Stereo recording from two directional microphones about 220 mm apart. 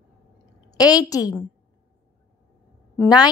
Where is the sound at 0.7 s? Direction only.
15° left (ahead or behind).